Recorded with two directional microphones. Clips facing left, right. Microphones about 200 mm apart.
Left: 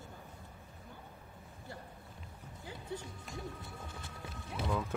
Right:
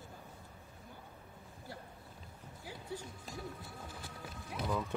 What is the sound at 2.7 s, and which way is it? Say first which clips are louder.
Music: left 1 dB; 25° left (ahead or behind).